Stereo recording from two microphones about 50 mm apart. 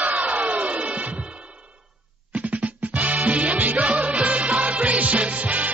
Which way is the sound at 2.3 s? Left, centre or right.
Right.